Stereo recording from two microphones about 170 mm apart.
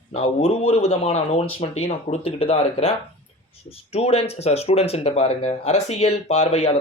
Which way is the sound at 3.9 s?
35° left (ahead or behind).